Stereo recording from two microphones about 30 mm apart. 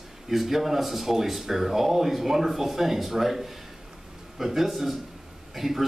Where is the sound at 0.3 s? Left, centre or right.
Centre.